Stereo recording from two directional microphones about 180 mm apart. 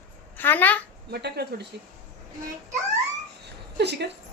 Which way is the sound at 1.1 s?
65° right (ahead or behind).